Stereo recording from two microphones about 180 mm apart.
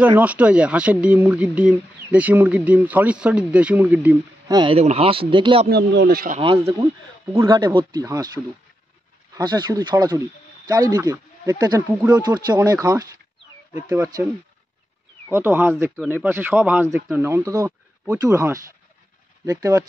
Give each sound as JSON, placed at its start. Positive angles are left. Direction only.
{"t": 0.2, "sound": "speech", "side_deg": -10}
{"t": 4.5, "sound": "speech", "side_deg": -20}
{"t": 4.7, "sound": "speech", "side_deg": -35}
{"t": 5.7, "sound": "speech", "side_deg": -65}
{"t": 6.3, "sound": "speech", "side_deg": -30}
{"t": 9.3, "sound": "speech", "side_deg": -25}
{"t": 15.3, "sound": "speech", "side_deg": -10}